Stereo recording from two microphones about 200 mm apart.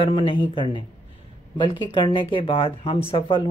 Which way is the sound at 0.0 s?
25° left (ahead or behind).